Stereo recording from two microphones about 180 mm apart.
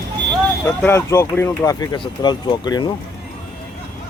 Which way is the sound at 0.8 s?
15° left (ahead or behind).